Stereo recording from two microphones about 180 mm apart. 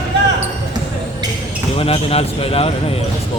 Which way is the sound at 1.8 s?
35° left (ahead or behind).